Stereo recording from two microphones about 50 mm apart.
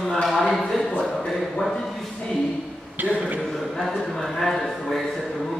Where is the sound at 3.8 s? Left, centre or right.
Centre.